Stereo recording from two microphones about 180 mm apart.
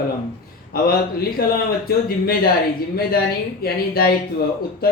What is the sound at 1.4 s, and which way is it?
Speech, 55° left (ahead or behind).